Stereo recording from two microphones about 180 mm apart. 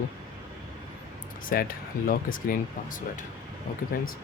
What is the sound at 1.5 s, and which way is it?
Speech, 50° left (ahead or behind).